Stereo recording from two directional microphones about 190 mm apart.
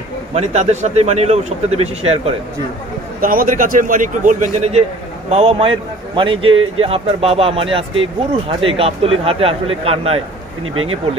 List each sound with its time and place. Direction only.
0.3 s speech: 35° right (ahead or behind)
3.2 s speech: 50° right (ahead or behind); by 10.2 s 30° right (ahead or behind)
10.6 s speech: 90° right